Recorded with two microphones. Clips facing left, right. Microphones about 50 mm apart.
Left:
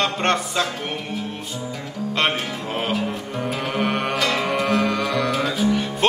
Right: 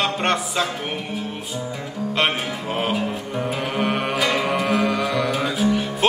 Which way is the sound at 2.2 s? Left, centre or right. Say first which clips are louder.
Even; centre.